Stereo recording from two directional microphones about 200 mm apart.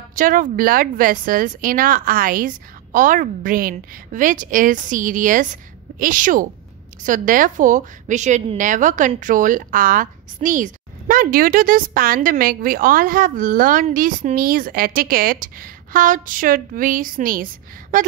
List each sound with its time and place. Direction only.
0.1 s a woman's voice: 40° right (ahead or behind)